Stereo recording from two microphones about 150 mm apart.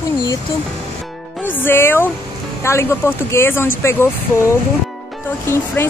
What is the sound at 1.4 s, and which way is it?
A woman's voice, 15° left (ahead or behind).